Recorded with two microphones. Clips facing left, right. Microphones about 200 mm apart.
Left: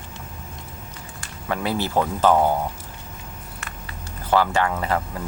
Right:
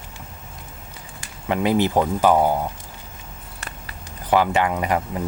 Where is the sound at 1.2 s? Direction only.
20° right (ahead or behind).